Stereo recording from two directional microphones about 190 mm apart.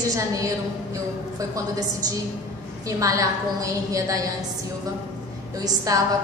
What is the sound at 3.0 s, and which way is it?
A woman's voice, 15° right (ahead or behind).